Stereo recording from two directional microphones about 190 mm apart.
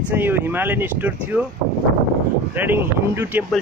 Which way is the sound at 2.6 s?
10° right (ahead or behind).